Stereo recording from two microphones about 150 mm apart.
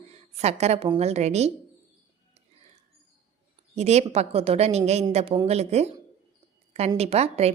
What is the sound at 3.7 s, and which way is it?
A woman's voice, 45° right (ahead or behind).